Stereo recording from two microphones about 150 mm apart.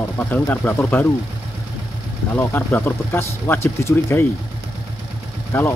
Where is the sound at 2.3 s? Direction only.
10° left (ahead or behind).